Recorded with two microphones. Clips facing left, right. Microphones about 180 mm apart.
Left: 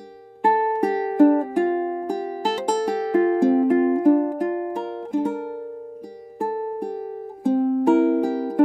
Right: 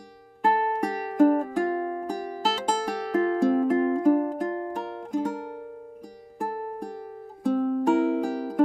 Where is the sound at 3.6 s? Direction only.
20° left (ahead or behind).